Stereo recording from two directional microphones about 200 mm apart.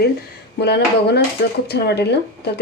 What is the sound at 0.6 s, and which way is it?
Speech, 55° left (ahead or behind).